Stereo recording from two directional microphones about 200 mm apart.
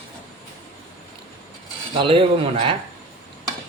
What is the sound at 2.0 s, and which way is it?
Speech, 25° right (ahead or behind).